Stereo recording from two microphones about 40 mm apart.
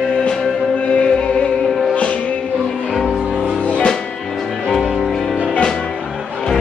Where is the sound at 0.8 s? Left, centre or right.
Left.